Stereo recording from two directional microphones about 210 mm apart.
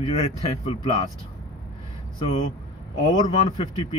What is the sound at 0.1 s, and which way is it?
Speech, 30° left (ahead or behind).